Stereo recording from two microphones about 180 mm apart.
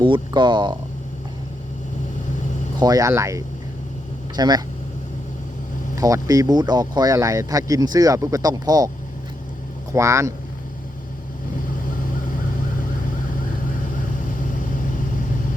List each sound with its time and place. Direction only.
0.0 s speech: 25° right (ahead or behind)
2.7 s speech: 20° right (ahead or behind)
6.0 s speech: 20° right (ahead or behind)
9.9 s speech: 15° right (ahead or behind)